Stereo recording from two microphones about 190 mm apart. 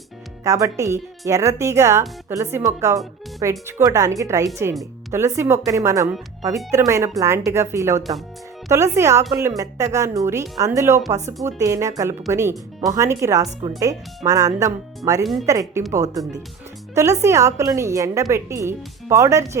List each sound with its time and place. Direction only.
0.4 s speech: 15° right (ahead or behind)
15.2 s speech: centre (ahead or behind)
15.4 s speech: 15° right (ahead or behind)